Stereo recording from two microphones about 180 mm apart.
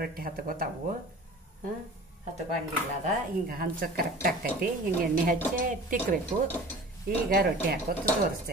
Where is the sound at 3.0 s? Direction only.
50° right (ahead or behind).